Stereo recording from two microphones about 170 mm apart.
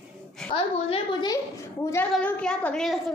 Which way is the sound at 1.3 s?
15° left (ahead or behind).